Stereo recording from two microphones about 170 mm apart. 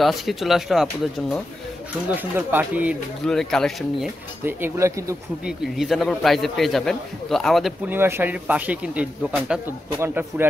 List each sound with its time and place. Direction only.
0.0 s a man's voice: centre (ahead or behind)
2.0 s speech: 10° right (ahead or behind)
3.3 s a man's voice: 5° left (ahead or behind)
4.5 s speech: 10° right (ahead or behind)
5.4 s a man's voice: centre (ahead or behind)
7.9 s a man's voice: 10° right (ahead or behind)